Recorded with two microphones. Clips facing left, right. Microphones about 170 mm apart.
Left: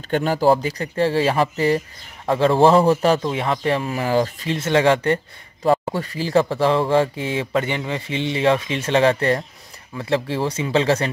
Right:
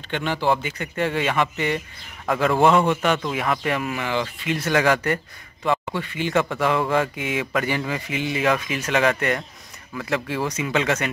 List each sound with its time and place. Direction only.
0.1 s a man's voice: 40° left (ahead or behind)
4.6 s a man's voice: 25° left (ahead or behind)